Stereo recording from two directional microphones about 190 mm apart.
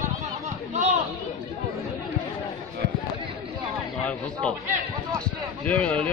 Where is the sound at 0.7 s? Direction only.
35° right (ahead or behind).